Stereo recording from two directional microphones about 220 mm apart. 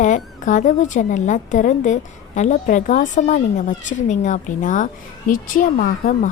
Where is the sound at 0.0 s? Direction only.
35° left (ahead or behind).